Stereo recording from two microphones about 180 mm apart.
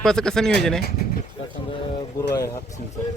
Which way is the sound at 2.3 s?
20° left (ahead or behind).